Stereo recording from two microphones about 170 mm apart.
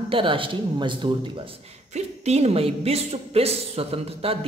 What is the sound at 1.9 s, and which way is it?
A woman's voice, 40° right (ahead or behind).